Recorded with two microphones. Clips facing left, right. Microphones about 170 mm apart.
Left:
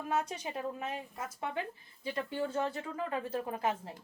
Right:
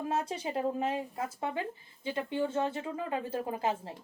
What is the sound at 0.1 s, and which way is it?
A woman's voice, 30° right (ahead or behind).